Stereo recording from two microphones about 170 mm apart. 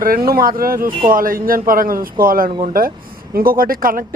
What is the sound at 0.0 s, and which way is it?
Speech, 60° right (ahead or behind).